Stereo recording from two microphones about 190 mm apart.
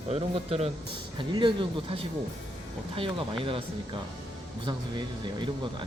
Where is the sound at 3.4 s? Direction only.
30° right (ahead or behind).